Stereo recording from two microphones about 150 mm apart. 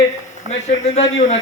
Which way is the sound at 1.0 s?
50° left (ahead or behind).